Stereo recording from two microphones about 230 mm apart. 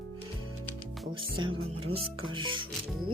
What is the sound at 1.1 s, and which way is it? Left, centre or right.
Speech, right.